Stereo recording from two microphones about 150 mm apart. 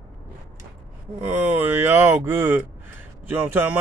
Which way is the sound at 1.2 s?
15° right (ahead or behind).